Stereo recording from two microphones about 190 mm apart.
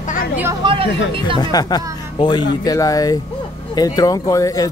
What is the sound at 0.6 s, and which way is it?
Chatter, 25° right (ahead or behind).